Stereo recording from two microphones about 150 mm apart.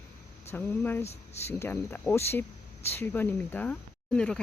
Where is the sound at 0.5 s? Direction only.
10° left (ahead or behind).